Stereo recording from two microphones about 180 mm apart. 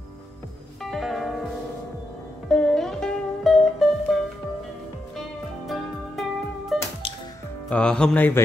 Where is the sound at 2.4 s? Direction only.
5° left (ahead or behind).